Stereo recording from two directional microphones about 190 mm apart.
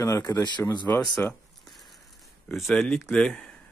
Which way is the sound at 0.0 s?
15° left (ahead or behind).